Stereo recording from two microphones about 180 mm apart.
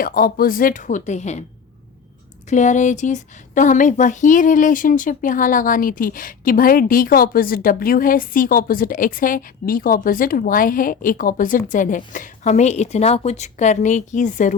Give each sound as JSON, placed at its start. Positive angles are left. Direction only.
{"t": 0.0, "sound": "speech", "side_deg": 55}
{"t": 2.5, "sound": "speech", "side_deg": 40}